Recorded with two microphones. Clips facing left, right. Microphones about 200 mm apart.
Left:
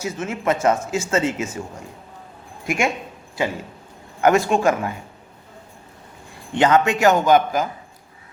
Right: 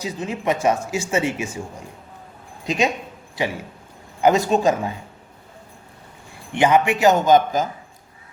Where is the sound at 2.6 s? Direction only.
20° right (ahead or behind).